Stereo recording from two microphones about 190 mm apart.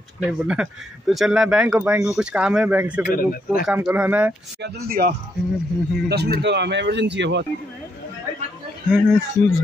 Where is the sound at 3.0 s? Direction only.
50° left (ahead or behind).